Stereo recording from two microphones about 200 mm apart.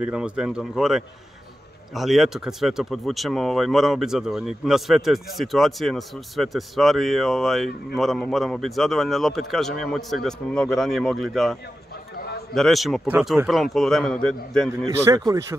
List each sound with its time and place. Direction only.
0.0 s speech: 5° right (ahead or behind)
12.5 s speech: centre (ahead or behind)
15.0 s speech: 15° right (ahead or behind)